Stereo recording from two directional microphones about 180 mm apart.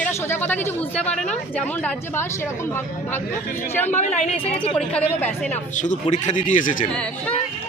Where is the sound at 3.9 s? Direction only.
40° left (ahead or behind).